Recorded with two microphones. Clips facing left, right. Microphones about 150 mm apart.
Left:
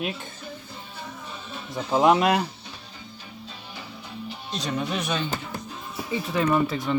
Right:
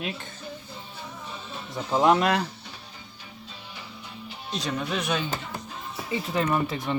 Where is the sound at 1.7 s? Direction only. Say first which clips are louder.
Left 2 dB; 10° left (ahead or behind).